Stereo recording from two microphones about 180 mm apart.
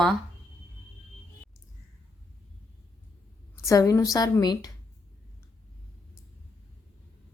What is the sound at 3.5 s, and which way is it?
A woman's voice, 15° left (ahead or behind).